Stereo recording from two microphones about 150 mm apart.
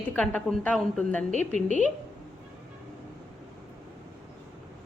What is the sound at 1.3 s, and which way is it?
Speech, 55° right (ahead or behind).